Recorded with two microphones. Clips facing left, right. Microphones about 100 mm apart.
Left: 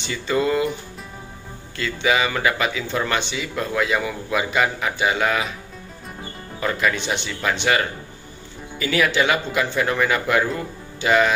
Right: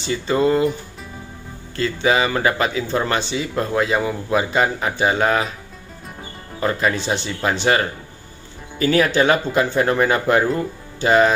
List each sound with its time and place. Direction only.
0.0 s speech: 30° right (ahead or behind)
1.8 s speech: 35° right (ahead or behind)
6.6 s speech: 30° right (ahead or behind)